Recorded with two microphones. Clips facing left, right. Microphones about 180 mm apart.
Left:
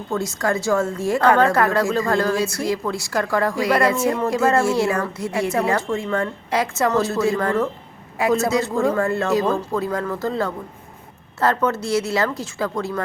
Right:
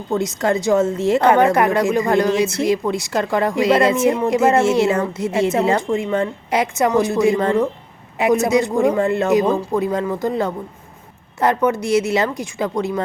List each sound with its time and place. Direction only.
0.1 s a woman's voice: 20° right (ahead or behind)